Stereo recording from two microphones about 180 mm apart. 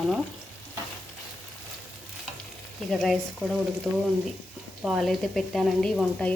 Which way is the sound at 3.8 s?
Centre (ahead or behind).